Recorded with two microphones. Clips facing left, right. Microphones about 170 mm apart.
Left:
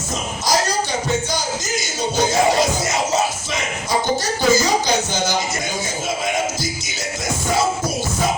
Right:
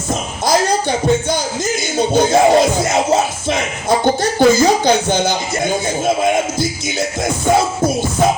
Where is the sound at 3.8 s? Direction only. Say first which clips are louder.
Right 6 dB; 55° right (ahead or behind).